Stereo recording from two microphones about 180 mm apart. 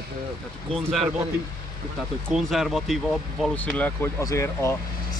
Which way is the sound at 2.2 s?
Centre (ahead or behind).